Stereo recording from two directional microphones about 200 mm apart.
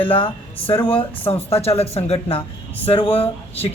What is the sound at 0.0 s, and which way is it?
Speech, 25° left (ahead or behind).